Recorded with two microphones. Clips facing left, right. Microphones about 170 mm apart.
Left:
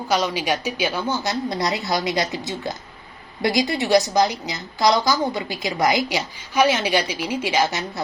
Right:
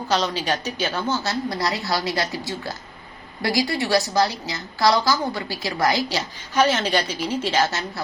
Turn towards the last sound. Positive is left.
turn(degrees=15)  # may be behind; listen again after turning